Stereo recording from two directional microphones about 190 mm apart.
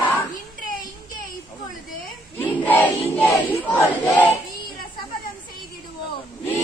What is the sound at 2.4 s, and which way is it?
Battle cry, 10° left (ahead or behind).